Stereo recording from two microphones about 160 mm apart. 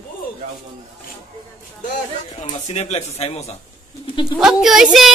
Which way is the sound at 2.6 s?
45° left (ahead or behind).